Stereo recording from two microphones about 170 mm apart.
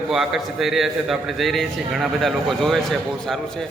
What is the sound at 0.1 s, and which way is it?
A man's voice, centre (ahead or behind).